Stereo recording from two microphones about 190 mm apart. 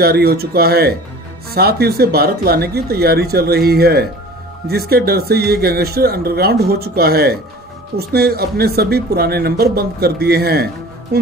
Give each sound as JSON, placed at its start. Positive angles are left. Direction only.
{"t": 0.0, "sound": "speech", "side_deg": -55}